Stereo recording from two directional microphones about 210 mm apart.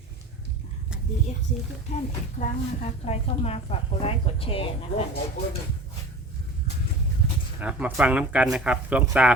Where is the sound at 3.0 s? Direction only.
30° left (ahead or behind).